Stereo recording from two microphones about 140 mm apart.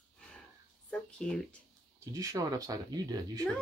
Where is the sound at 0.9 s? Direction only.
5° left (ahead or behind).